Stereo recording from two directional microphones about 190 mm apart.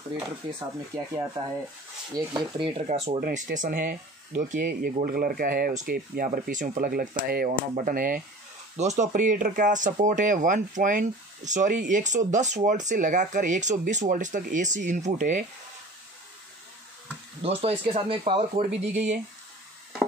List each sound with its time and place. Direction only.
0.6 s speech: 20° right (ahead or behind)
2.6 s speech: 30° right (ahead or behind)
3.2 s speech: 50° right (ahead or behind)
17.4 s speech: 30° right (ahead or behind)